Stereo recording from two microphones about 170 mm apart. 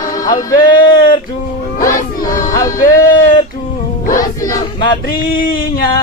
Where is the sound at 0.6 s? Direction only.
25° left (ahead or behind).